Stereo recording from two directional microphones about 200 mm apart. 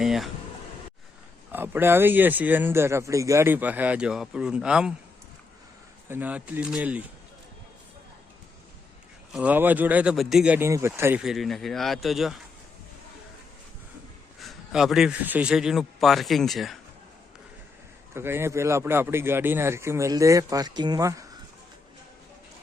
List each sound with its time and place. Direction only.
0.0 s a sound: centre (ahead or behind)
1.5 s speech: 10° right (ahead or behind)
6.1 s speech: 10° right (ahead or behind)
9.3 s speech: 5° right (ahead or behind)
14.4 s speech: centre (ahead or behind)
18.1 s speech: 10° right (ahead or behind)